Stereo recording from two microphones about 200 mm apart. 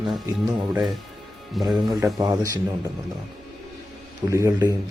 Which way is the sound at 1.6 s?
Centre (ahead or behind).